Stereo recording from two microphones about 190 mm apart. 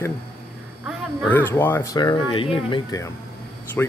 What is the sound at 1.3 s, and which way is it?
Speech, 10° left (ahead or behind).